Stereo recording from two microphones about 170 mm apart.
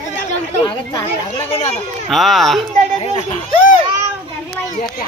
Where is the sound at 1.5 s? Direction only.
35° left (ahead or behind).